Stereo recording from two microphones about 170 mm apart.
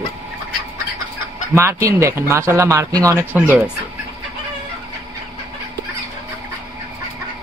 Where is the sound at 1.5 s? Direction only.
15° right (ahead or behind).